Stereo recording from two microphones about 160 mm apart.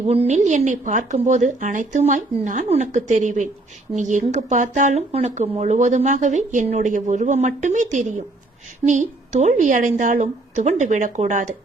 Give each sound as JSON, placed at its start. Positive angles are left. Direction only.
{"t": 0.0, "sound": "speech", "side_deg": -40}